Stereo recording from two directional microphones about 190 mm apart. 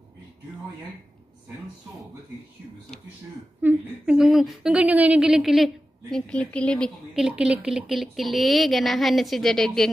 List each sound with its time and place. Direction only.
3.6 s a woman's voice: 5° right (ahead or behind)